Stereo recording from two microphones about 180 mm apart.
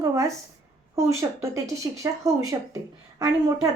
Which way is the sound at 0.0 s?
20° right (ahead or behind).